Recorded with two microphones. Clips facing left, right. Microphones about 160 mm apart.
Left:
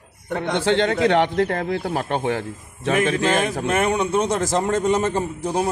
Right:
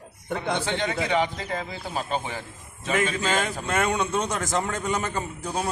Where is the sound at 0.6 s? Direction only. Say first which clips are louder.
Left 9 dB; 70° left (ahead or behind).